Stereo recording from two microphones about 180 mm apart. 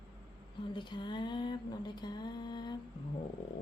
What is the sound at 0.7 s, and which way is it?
A woman's voice, 25° left (ahead or behind).